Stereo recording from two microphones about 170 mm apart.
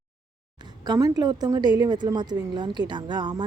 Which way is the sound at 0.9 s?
20° right (ahead or behind).